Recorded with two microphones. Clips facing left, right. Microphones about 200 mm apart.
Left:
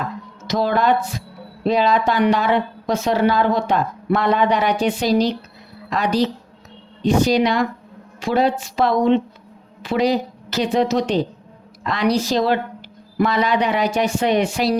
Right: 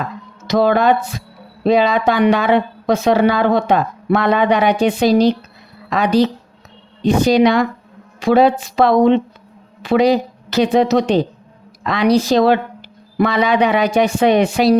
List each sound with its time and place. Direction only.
0.4 s speech: 65° right (ahead or behind)
7.3 s speech: 70° right (ahead or behind)